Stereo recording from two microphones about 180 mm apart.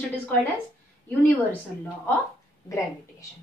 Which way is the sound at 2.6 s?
15° left (ahead or behind).